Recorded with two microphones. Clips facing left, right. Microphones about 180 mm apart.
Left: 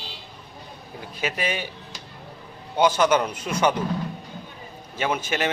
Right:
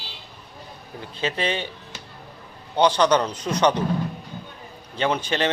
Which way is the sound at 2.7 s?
5° left (ahead or behind).